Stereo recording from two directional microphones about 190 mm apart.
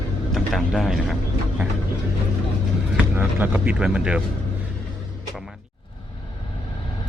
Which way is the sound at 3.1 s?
10° right (ahead or behind).